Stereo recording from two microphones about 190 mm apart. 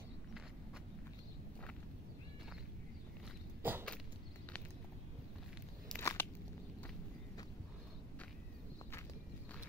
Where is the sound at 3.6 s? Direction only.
10° right (ahead or behind).